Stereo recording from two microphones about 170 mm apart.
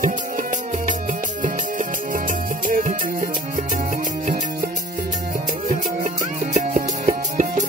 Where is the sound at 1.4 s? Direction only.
50° right (ahead or behind).